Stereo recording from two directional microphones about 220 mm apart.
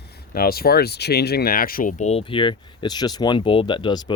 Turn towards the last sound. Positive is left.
turn(degrees=20)  # may be behind; listen again after turning